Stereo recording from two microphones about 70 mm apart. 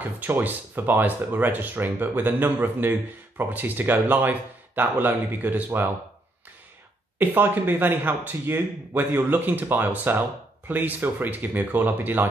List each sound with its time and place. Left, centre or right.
0.0 s speech: right
7.2 s speech: right